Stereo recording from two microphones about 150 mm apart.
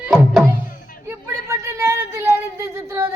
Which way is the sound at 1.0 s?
20° right (ahead or behind).